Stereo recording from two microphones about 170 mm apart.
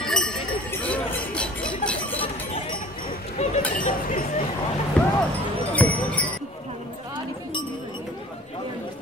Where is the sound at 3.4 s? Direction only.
40° left (ahead or behind).